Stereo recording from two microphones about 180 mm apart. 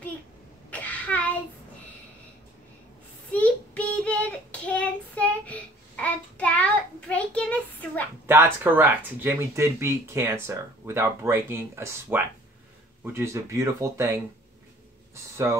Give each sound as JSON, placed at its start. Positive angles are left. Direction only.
{"t": 0.7, "sound": "a sound", "side_deg": 10}
{"t": 3.3, "sound": "child singing", "side_deg": 10}
{"t": 8.3, "sound": "speech", "side_deg": -10}